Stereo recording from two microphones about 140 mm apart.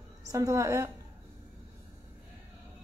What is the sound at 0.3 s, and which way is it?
Speech, 25° right (ahead or behind).